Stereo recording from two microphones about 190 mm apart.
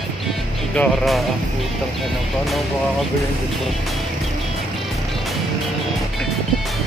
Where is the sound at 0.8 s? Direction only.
Centre (ahead or behind).